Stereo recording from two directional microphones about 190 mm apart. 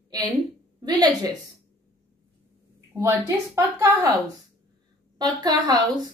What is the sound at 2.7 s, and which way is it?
A woman's voice, 15° right (ahead or behind).